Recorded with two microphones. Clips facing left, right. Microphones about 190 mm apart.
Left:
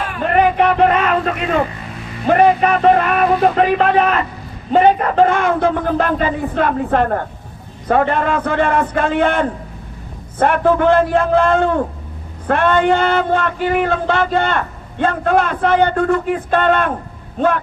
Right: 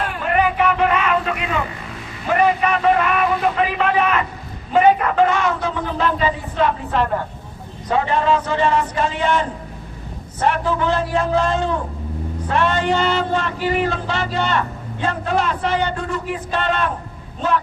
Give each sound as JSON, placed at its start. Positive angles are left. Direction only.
{"t": 0.5, "sound": "a man's voice", "side_deg": 40}